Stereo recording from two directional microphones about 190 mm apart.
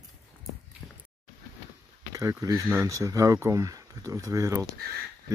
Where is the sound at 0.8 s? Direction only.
Centre (ahead or behind).